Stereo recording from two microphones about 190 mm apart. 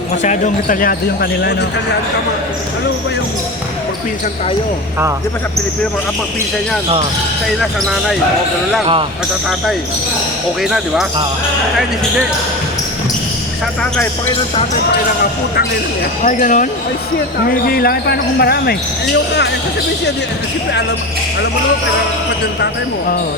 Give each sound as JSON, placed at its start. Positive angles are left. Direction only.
{"t": 0.2, "sound": "speech", "side_deg": 40}
{"t": 7.6, "sound": "speech", "side_deg": 0}
{"t": 10.6, "sound": "speech", "side_deg": 0}
{"t": 16.2, "sound": "speech", "side_deg": 45}